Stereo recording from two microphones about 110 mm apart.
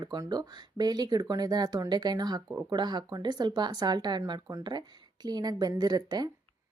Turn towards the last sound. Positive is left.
turn(degrees=-40)  # may be behind; listen again after turning